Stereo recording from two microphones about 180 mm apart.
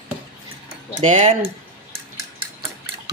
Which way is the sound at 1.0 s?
40° right (ahead or behind).